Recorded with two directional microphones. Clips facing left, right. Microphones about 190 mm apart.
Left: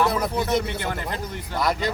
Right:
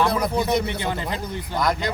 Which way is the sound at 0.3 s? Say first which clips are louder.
Right 1 dB; 20° right (ahead or behind).